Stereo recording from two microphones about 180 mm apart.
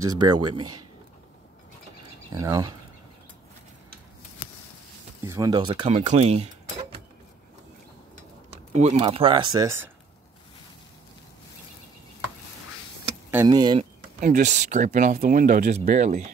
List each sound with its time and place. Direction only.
0.1 s speech: 25° right (ahead or behind)
2.3 s speech: 20° right (ahead or behind)
5.2 s speech: 20° right (ahead or behind); by 6.9 s 35° right (ahead or behind)
8.7 s speech: 40° right (ahead or behind); by 9.8 s 20° right (ahead or behind)
13.5 s speech: 25° right (ahead or behind)
14.2 s speech: 45° right (ahead or behind)